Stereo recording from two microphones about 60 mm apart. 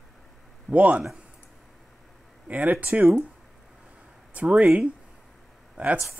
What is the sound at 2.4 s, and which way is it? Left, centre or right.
Speech, right.